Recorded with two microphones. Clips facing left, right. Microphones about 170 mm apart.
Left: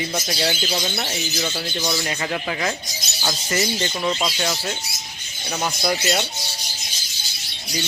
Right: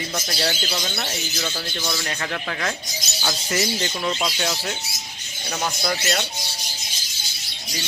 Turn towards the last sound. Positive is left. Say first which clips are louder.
# left 3 dB
turn(degrees=10)  # may be behind; listen again after turning